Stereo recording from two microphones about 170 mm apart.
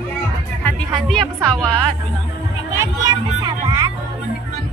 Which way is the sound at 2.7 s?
20° right (ahead or behind).